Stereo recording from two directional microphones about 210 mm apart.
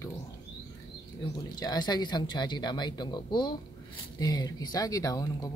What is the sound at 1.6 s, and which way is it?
Speech, 20° left (ahead or behind).